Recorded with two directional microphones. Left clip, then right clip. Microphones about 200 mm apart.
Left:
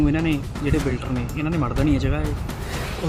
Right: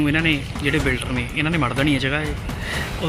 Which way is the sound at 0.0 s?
5° left (ahead or behind).